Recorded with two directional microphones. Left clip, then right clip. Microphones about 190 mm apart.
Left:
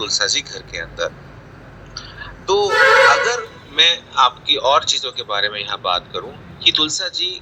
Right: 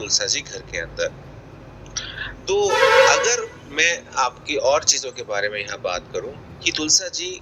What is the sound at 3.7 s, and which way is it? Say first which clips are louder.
A man's voice: left 5 dB; centre (ahead or behind).